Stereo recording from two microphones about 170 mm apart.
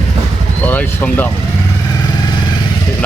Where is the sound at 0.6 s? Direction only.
10° left (ahead or behind).